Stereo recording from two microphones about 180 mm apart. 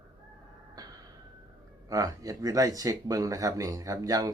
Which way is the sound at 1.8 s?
20° right (ahead or behind).